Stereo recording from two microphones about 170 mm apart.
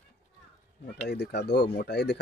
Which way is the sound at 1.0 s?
75° left (ahead or behind).